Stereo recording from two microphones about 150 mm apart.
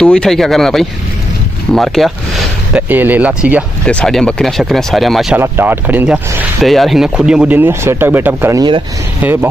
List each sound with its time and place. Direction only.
0.0 s speech: 5° left (ahead or behind)
2.9 s speech: 10° right (ahead or behind)
3.8 s speech: 5° left (ahead or behind)
5.4 s speech: 15° right (ahead or behind)
6.6 s speech: centre (ahead or behind)
8.5 s speech: 30° right (ahead or behind)
9.2 s speech: 15° right (ahead or behind)